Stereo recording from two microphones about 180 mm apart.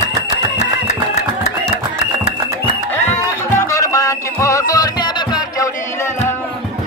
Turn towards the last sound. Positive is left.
turn(degrees=20)  # may be behind; listen again after turning